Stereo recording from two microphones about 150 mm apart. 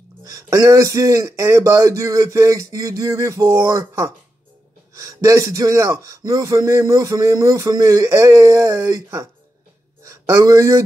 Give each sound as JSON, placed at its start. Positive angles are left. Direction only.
{"t": 0.2, "sound": "a man's voice", "side_deg": -25}